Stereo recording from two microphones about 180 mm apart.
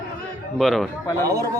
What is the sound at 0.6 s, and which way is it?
Speech, centre (ahead or behind).